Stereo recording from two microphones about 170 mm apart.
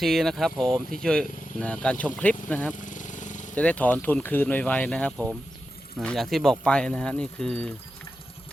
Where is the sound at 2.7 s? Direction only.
50° left (ahead or behind).